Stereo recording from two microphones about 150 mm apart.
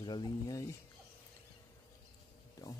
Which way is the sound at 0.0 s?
30° left (ahead or behind).